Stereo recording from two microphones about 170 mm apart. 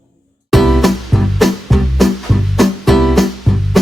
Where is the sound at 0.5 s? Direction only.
Centre (ahead or behind).